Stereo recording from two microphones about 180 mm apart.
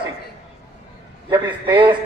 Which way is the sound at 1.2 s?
20° right (ahead or behind).